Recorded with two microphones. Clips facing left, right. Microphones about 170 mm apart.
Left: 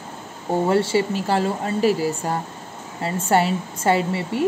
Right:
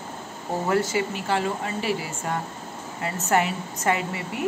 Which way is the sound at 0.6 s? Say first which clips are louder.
Left 4 dB; 30° left (ahead or behind).